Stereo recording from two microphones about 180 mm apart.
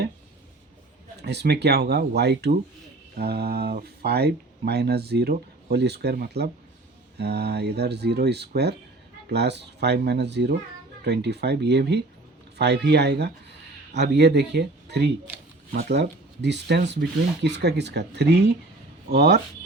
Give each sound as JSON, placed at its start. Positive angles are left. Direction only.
{"t": 1.2, "sound": "speech", "side_deg": -70}